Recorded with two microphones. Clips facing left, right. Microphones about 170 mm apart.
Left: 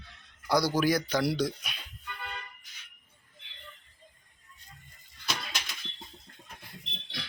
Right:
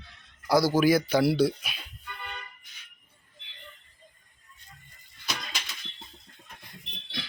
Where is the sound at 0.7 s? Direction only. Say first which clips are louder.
Right 5 dB; 5° right (ahead or behind).